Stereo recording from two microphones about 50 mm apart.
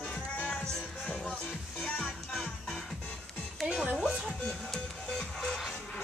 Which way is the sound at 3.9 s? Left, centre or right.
Centre.